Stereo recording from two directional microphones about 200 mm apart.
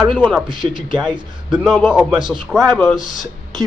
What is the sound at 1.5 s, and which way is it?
A man's voice, 5° left (ahead or behind).